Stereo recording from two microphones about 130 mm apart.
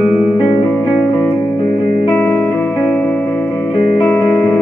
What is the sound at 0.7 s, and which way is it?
Music, 20° left (ahead or behind).